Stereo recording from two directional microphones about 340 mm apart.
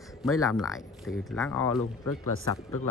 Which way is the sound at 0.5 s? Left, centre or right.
Centre.